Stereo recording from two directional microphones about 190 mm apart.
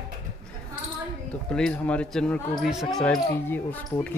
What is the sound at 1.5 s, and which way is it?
Speech, 5° left (ahead or behind).